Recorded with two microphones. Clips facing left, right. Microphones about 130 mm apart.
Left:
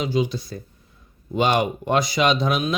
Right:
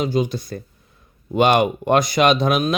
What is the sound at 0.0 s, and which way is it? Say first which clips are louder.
Speech: right 2 dB; 50° right (ahead or behind).